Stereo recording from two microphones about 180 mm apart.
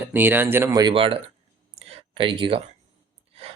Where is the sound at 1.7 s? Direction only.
35° right (ahead or behind).